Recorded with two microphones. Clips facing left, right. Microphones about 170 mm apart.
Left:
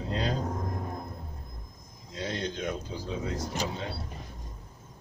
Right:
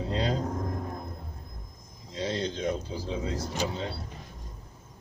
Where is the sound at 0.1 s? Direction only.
30° right (ahead or behind).